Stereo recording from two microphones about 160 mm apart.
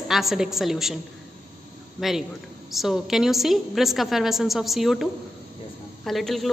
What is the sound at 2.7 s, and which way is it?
A woman's voice, centre (ahead or behind).